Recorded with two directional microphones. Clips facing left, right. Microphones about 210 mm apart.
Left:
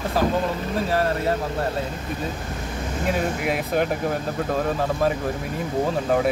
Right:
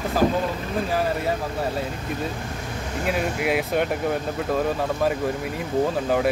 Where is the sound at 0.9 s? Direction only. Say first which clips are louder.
Left 2 dB; centre (ahead or behind).